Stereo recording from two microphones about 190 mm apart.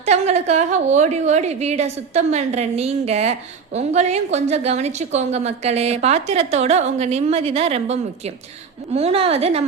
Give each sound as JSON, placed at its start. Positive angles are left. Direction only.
{"t": 0.0, "sound": "a woman's voice", "side_deg": -35}